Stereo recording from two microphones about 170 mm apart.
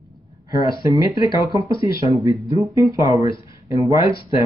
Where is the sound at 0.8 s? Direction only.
20° right (ahead or behind).